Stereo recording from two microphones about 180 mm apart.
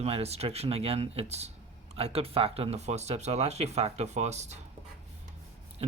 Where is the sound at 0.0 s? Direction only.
35° right (ahead or behind).